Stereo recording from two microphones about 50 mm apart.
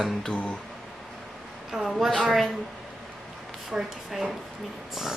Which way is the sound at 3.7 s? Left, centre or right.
Centre.